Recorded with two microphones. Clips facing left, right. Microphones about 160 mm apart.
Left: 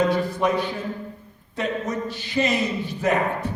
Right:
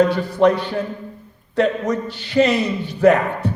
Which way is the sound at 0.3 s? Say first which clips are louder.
Right 7 dB; 65° right (ahead or behind).